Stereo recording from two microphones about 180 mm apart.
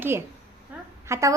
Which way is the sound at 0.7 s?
10° right (ahead or behind).